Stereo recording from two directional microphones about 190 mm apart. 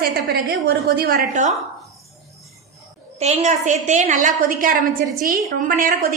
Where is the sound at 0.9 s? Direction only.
55° right (ahead or behind).